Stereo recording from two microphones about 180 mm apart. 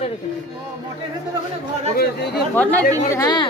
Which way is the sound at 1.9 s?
60° left (ahead or behind).